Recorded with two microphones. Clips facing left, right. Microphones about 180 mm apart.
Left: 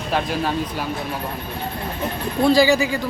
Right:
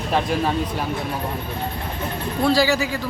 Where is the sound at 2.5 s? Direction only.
15° left (ahead or behind).